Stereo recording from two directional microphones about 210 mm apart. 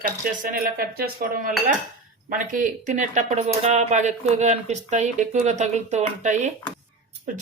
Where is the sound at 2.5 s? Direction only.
40° right (ahead or behind).